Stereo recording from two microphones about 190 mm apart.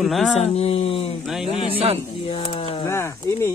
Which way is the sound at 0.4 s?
35° left (ahead or behind).